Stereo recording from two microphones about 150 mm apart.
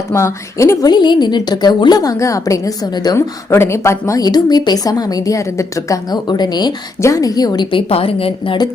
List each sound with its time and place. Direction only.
0.1 s a woman's voice: 20° left (ahead or behind)